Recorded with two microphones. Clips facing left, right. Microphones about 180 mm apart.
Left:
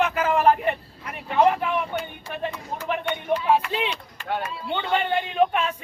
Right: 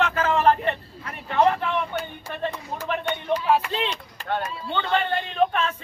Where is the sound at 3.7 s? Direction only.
10° left (ahead or behind).